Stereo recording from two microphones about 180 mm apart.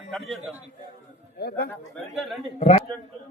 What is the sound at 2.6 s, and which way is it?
Speech, 35° left (ahead or behind).